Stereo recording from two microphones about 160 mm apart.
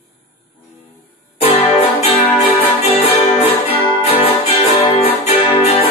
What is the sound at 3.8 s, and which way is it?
Music, 35° left (ahead or behind).